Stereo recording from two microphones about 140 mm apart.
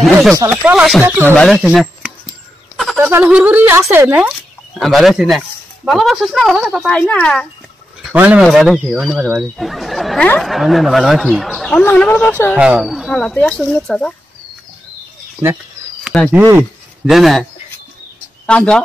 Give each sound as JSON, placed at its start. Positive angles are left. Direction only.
{"t": 0.0, "sound": "a sound", "side_deg": 0}
{"t": 0.5, "sound": "speech", "side_deg": -10}
{"t": 1.5, "sound": "a sound", "side_deg": -5}
{"t": 3.0, "sound": "speech", "side_deg": -15}
{"t": 4.7, "sound": "speech", "side_deg": 0}
{"t": 8.1, "sound": "speech", "side_deg": -10}
{"t": 8.4, "sound": "speech", "side_deg": 0}
{"t": 11.8, "sound": "speech", "side_deg": 10}
{"t": 12.5, "sound": "speech", "side_deg": -5}
{"t": 16.3, "sound": "speech", "side_deg": -15}
{"t": 17.0, "sound": "speech", "side_deg": 0}
{"t": 18.5, "sound": "speech", "side_deg": 10}